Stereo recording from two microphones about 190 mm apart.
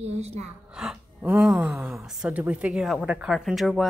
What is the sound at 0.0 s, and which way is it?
Gasp, 35° right (ahead or behind).